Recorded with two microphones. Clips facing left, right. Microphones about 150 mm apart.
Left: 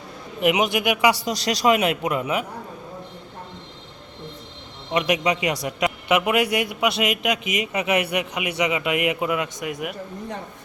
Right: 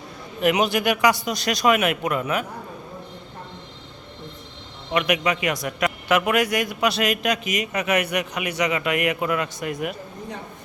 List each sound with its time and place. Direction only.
0.4 s a man's voice: 20° left (ahead or behind)
1.2 s a man's voice: 30° left (ahead or behind)
4.9 s a man's voice: 20° left (ahead or behind)
6.4 s a man's voice: 25° left (ahead or behind)